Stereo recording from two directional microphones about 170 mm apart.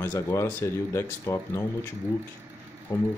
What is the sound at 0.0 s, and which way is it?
Speech, 15° left (ahead or behind).